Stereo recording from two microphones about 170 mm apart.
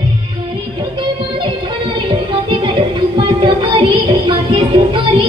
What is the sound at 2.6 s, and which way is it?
Music, 30° right (ahead or behind).